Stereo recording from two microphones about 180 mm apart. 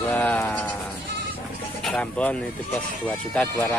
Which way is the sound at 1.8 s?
5° left (ahead or behind).